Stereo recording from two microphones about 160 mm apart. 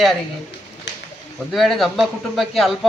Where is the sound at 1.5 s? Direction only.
Centre (ahead or behind).